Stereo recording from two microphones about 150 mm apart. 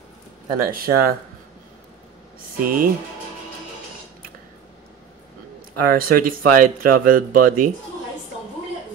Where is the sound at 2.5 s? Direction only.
70° right (ahead or behind).